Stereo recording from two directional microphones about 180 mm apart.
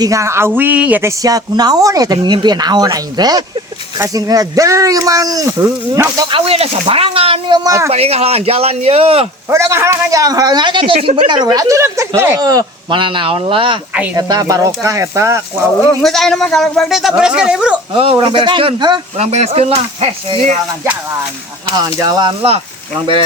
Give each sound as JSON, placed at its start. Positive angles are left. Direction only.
{"t": 0.0, "sound": "a man's voice", "side_deg": -15}
{"t": 7.9, "sound": "speech", "side_deg": -35}
{"t": 9.5, "sound": "a man's voice", "side_deg": -15}
{"t": 16.0, "sound": "speech", "side_deg": 0}
{"t": 17.9, "sound": "a man's voice", "side_deg": -30}
{"t": 19.1, "sound": "speech", "side_deg": -40}
{"t": 21.7, "sound": "a man's voice", "side_deg": -20}